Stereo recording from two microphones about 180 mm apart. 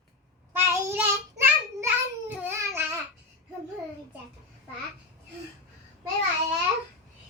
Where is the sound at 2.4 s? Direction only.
10° right (ahead or behind).